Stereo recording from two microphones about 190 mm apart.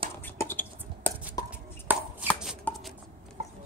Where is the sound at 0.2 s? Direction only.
10° left (ahead or behind).